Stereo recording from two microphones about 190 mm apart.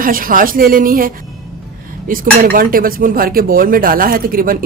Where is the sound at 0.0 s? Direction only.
45° right (ahead or behind).